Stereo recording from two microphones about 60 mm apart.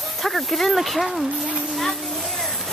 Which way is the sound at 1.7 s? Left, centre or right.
Centre.